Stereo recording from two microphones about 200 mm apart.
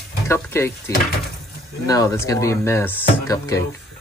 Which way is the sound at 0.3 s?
10° left (ahead or behind).